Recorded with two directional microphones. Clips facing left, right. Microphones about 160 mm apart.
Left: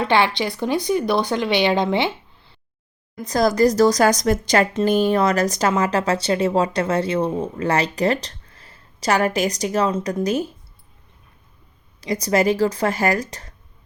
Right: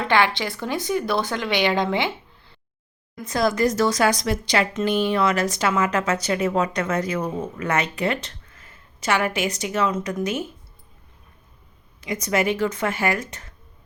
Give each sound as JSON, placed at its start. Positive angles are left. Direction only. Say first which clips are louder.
{"t": 0.0, "sound": "speech", "louder": "left 2 dB", "side_deg": 20}
{"t": 3.2, "sound": "a woman's voice", "louder": "left 4 dB", "side_deg": 40}
{"t": 11.9, "sound": "a woman's voice", "louder": "left 4 dB", "side_deg": 35}